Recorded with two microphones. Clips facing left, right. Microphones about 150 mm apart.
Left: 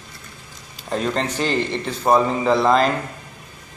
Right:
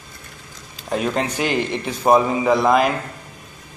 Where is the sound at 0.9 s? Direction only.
10° right (ahead or behind).